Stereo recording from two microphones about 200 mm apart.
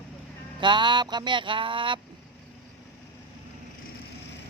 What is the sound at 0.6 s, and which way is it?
Speech, 25° right (ahead or behind).